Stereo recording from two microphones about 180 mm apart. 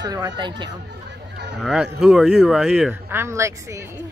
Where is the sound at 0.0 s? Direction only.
20° right (ahead or behind).